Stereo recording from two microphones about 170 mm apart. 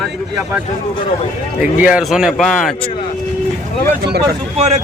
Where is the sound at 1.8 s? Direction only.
5° right (ahead or behind).